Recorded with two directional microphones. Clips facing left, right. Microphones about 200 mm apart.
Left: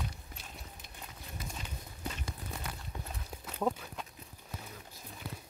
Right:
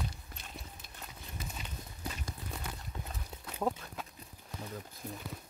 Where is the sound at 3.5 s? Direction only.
5° right (ahead or behind).